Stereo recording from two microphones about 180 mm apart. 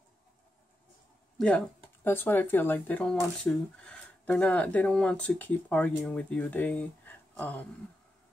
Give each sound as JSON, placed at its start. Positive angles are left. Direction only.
{"t": 2.0, "sound": "speech", "side_deg": 10}